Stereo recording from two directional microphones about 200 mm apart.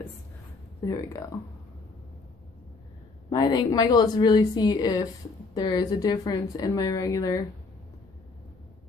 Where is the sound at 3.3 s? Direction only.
20° left (ahead or behind).